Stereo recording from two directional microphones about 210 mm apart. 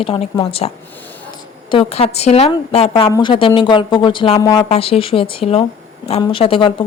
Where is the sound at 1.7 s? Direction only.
25° left (ahead or behind).